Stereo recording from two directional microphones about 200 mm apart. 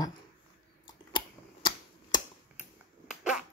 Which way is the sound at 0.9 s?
20° left (ahead or behind).